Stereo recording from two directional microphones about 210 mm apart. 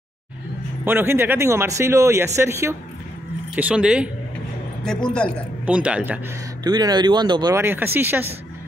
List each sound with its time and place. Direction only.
0.8 s speech: 10° right (ahead or behind)
6.6 s speech: 20° right (ahead or behind)